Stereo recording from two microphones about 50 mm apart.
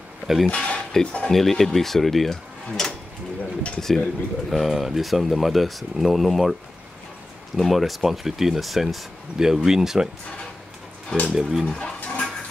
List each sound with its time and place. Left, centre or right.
0.5 s speech: left
1.0 s speech: centre
2.8 s mechanisms: centre
3.3 s pigeon: left
3.8 s speech: centre
7.5 s speech: centre
11.2 s speech: centre
11.6 s a sound: left